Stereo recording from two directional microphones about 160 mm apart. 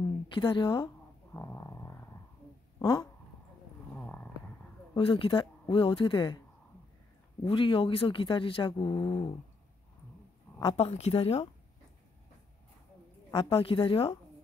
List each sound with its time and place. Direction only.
0.3 s a woman's voice: 30° left (ahead or behind)
1.3 s a sound: 20° left (ahead or behind)
2.8 s a woman's voice: 25° left (ahead or behind)
3.9 s a sound: 10° left (ahead or behind)
4.9 s speech: 35° left (ahead or behind)
7.4 s speech: 35° left (ahead or behind)
10.6 s speech: 35° left (ahead or behind)
13.3 s speech: 35° left (ahead or behind)